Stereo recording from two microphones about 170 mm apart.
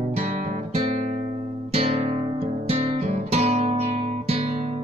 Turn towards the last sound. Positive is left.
turn(degrees=-35)  # may be behind; listen again after turning